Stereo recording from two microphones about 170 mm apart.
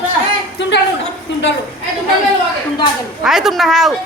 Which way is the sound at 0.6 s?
90° left.